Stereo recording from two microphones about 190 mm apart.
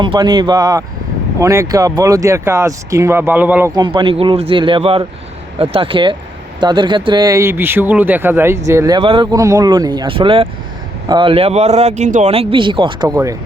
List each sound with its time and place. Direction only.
0.0 s speech: 25° right (ahead or behind)
3.8 s speech: 25° right (ahead or behind)
9.0 s speech: 25° right (ahead or behind)